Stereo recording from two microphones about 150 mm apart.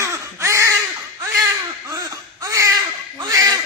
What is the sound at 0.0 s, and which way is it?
Crow, 20° right (ahead or behind).